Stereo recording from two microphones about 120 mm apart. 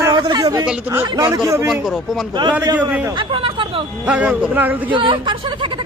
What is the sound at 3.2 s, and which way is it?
Speech, 45° right (ahead or behind).